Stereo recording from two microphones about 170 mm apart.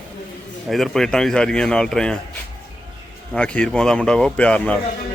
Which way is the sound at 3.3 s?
5° left (ahead or behind).